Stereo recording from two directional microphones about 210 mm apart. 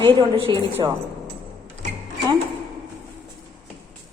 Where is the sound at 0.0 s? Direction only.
20° right (ahead or behind).